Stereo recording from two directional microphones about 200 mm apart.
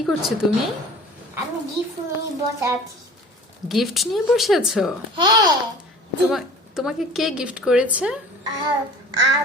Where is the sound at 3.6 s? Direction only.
Centre (ahead or behind).